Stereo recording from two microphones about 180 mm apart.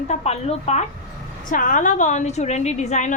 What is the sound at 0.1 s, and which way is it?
A woman's voice, 35° left (ahead or behind).